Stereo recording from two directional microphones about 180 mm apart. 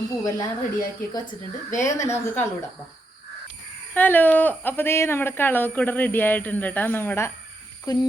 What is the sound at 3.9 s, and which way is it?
Speech, 10° left (ahead or behind).